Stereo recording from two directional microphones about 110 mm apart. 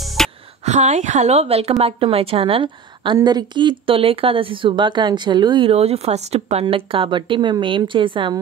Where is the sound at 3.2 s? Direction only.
40° right (ahead or behind).